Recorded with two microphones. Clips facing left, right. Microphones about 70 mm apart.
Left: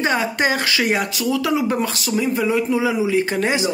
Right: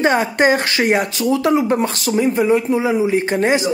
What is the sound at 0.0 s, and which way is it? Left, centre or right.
A woman's voice, right.